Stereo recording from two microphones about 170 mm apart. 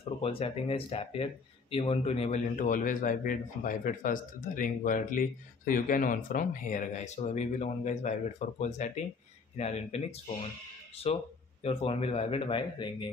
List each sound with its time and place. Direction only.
0.2 s speech: 35° left (ahead or behind)
11.1 s speech: 35° left (ahead or behind)